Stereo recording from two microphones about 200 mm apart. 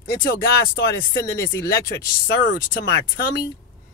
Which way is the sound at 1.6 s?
50° left (ahead or behind).